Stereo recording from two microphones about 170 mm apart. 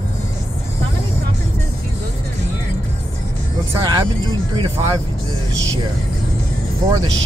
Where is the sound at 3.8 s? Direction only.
25° right (ahead or behind).